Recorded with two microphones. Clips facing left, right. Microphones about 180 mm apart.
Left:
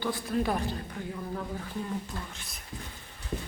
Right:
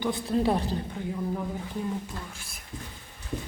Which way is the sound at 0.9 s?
15° right (ahead or behind).